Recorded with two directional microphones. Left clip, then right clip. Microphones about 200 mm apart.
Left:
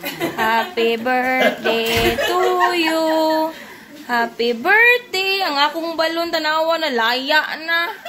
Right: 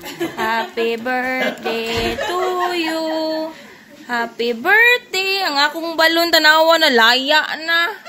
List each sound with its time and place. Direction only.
0.4 s a sound: 5° right (ahead or behind)
4.1 s speech: 10° right (ahead or behind)
5.9 s a woman's voice: 45° right (ahead or behind)